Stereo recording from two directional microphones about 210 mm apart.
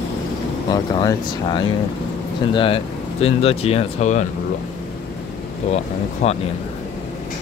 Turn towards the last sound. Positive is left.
turn(degrees=30)  # may be behind; listen again after turning